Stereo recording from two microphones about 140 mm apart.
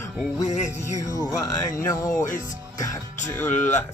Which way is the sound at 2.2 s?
70° left (ahead or behind).